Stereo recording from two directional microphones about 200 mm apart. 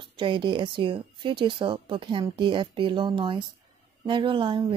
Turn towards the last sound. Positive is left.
turn(degrees=-25)  # may be behind; listen again after turning